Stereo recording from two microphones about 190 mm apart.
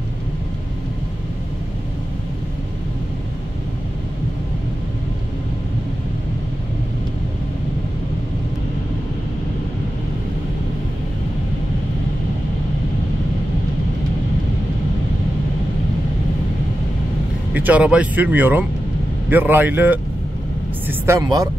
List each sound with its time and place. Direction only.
17.6 s speech: 10° right (ahead or behind)